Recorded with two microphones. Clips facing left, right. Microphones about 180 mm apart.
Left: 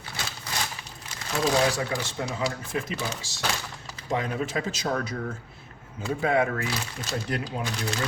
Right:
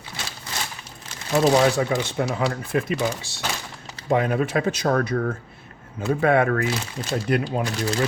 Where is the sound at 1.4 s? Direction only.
60° right (ahead or behind).